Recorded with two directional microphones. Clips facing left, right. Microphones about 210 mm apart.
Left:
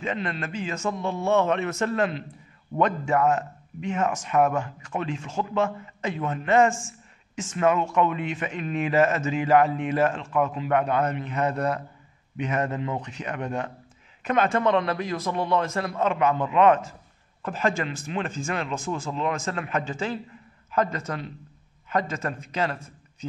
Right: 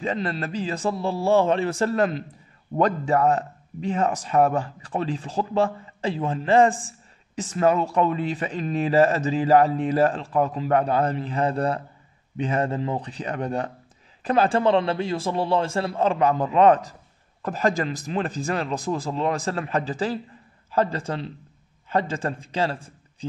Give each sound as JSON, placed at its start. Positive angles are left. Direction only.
{"t": 0.0, "sound": "a man's voice", "side_deg": -35}